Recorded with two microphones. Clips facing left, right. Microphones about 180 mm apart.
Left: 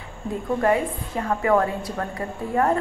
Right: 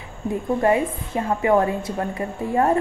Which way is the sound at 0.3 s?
20° right (ahead or behind).